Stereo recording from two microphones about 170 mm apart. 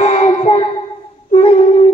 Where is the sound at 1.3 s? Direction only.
35° left (ahead or behind).